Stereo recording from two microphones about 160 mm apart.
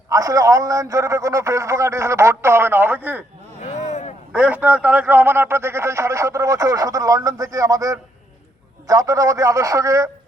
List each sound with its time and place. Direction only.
0.1 s a man's voice: 20° right (ahead or behind)
3.6 s a sound: 45° left (ahead or behind)
4.3 s a man's voice: 10° right (ahead or behind)